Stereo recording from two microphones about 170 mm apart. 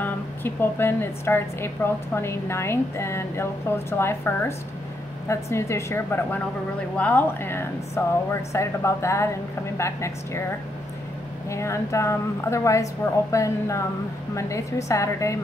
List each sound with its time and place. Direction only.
0.0 s a woman's voice: 15° left (ahead or behind)
11.5 s a woman's voice: 15° left (ahead or behind)